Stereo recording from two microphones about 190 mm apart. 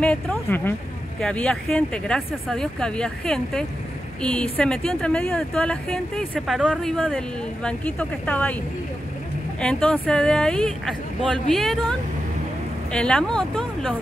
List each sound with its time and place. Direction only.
0.0 s speech: 5° left (ahead or behind)
9.6 s speech: 5° left (ahead or behind)
12.9 s speech: 5° left (ahead or behind)